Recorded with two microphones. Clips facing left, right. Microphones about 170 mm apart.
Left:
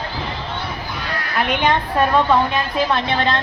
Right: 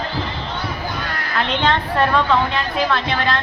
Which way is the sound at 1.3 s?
10° left (ahead or behind).